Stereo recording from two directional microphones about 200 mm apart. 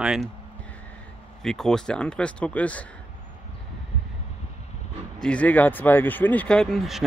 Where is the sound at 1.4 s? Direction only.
Centre (ahead or behind).